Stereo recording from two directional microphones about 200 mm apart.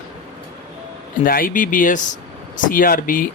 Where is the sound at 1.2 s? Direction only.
45° left (ahead or behind).